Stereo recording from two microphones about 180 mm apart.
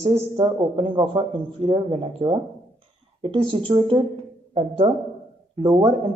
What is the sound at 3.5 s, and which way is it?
A man's voice, 30° right (ahead or behind).